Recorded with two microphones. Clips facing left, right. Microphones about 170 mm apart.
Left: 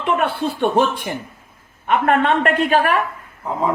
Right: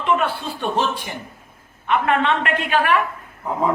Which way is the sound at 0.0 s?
55° left (ahead or behind).